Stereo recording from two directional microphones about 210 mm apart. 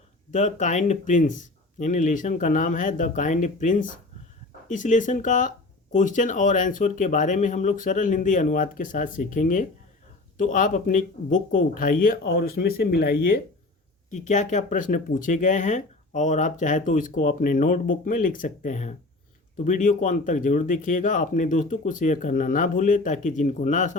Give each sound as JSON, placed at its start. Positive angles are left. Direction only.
{"t": 0.3, "sound": "speech", "side_deg": 35}
{"t": 14.1, "sound": "speech", "side_deg": 35}